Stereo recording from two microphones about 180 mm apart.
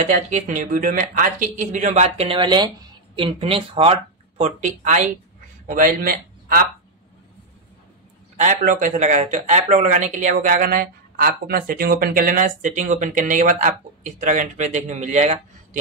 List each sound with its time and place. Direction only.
0.0 s speech: 45° right (ahead or behind)
8.4 s speech: 45° right (ahead or behind)